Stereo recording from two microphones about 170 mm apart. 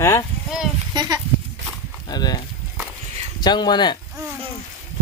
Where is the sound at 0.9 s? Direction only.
20° right (ahead or behind).